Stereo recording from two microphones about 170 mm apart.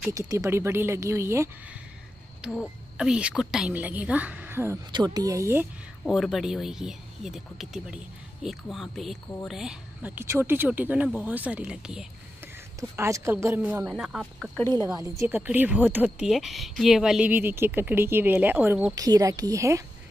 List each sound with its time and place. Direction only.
0.1 s speech: 20° right (ahead or behind)
2.4 s a woman's voice: 5° right (ahead or behind)
6.0 s speech: centre (ahead or behind)
10.1 s speech: 15° right (ahead or behind)
12.9 s speech: 15° right (ahead or behind)
14.6 s a woman's voice: 15° left (ahead or behind)
15.0 s speech: 15° right (ahead or behind)
18.9 s a woman's voice: 20° right (ahead or behind)